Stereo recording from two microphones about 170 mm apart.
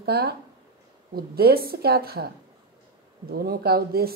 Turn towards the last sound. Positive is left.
turn(degrees=-65)  # may be behind; listen again after turning